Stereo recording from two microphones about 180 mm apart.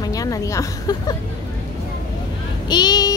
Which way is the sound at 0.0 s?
20° left (ahead or behind).